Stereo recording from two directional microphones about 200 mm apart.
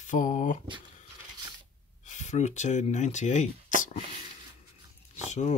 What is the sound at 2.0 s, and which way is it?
Speech, 35° left (ahead or behind).